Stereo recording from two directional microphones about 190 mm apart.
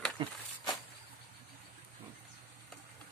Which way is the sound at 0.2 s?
25° right (ahead or behind).